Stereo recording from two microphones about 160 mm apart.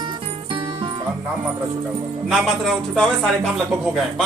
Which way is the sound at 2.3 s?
Centre (ahead or behind).